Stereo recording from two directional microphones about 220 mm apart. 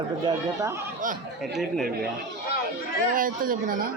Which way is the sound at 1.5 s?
Centre (ahead or behind).